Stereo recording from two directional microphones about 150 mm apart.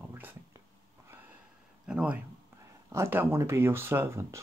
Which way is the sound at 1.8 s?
10° right (ahead or behind).